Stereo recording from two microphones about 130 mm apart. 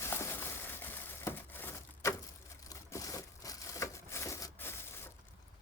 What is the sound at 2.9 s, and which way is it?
Crushing, 25° left (ahead or behind).